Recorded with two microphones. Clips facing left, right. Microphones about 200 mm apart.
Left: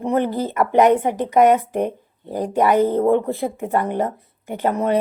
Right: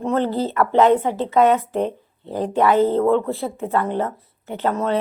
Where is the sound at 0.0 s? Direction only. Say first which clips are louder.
Even; 15° left (ahead or behind).